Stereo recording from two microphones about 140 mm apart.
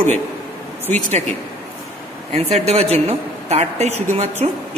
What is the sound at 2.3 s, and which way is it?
Speech, 50° right (ahead or behind).